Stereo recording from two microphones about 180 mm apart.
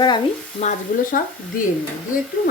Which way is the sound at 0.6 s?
45° left (ahead or behind).